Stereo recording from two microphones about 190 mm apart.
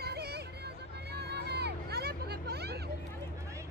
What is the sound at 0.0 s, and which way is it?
Music, 55° right (ahead or behind).